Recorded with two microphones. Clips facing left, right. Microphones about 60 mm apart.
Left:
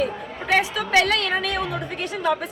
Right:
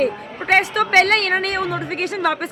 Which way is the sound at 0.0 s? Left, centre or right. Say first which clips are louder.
Right 4 dB; right.